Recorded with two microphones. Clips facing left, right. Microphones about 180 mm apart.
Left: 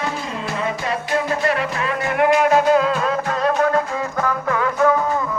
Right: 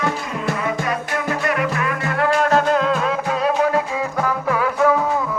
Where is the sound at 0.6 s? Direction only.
25° left (ahead or behind).